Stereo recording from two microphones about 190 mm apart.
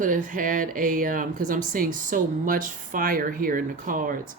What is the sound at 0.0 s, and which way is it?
Speech, 45° right (ahead or behind).